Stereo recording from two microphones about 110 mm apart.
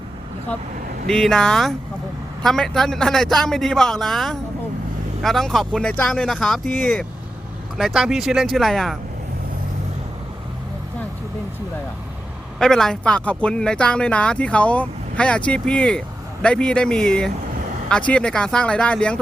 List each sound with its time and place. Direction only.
1.0 s a man's voice: 5° left (ahead or behind)
7.8 s a man's voice: 5° right (ahead or behind)
12.5 s speech: 5° left (ahead or behind)